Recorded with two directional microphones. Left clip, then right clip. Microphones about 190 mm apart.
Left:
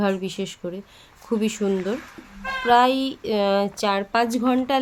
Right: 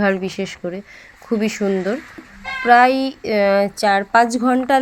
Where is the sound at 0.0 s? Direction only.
15° right (ahead or behind).